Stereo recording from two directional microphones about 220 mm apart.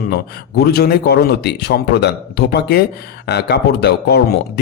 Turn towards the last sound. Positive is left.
turn(degrees=45)  # may be behind; listen again after turning